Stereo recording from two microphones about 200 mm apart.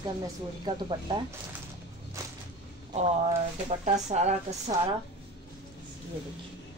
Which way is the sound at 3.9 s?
35° right (ahead or behind).